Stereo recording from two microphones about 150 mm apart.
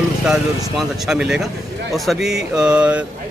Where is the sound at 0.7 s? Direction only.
Centre (ahead or behind).